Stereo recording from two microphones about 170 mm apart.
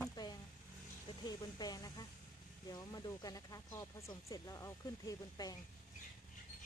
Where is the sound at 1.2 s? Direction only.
25° left (ahead or behind).